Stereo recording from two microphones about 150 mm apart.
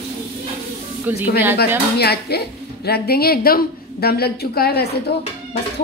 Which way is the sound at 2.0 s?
90° left.